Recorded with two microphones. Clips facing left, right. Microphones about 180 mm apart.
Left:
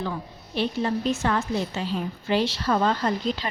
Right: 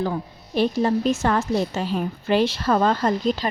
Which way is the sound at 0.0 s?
45° right (ahead or behind).